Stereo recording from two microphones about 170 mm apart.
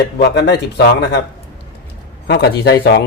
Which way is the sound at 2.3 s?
85° left.